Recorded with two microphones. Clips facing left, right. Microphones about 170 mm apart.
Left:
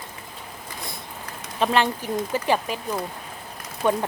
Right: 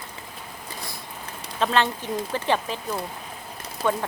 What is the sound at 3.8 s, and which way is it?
Speech, 15° left (ahead or behind).